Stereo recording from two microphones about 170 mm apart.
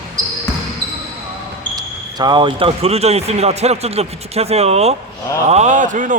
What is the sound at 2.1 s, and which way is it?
A man's voice, 25° right (ahead or behind).